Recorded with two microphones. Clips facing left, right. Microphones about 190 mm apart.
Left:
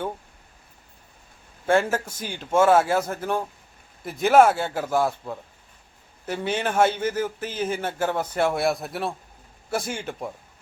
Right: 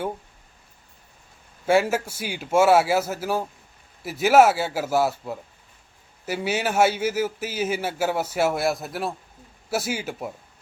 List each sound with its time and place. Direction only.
1.6 s a man's voice: 10° right (ahead or behind)